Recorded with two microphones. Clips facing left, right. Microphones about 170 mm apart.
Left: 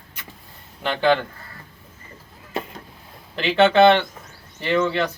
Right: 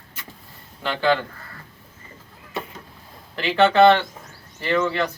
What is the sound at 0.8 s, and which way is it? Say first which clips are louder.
Speech: left 2 dB; 15° left (ahead or behind).